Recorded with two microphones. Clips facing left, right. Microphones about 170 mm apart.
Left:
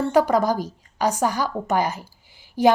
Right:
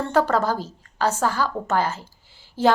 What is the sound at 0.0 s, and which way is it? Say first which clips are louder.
A woman's voice: left 2 dB; 10° left (ahead or behind).